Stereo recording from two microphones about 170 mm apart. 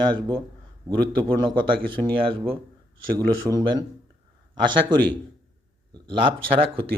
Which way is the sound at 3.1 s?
20° right (ahead or behind).